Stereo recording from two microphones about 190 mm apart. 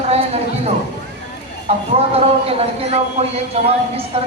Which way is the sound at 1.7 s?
30° right (ahead or behind).